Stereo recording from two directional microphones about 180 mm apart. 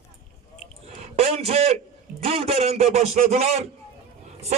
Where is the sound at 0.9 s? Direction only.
35° right (ahead or behind).